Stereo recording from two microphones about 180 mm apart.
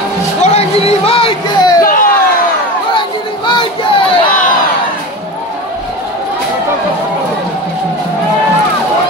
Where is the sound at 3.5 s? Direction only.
30° left (ahead or behind).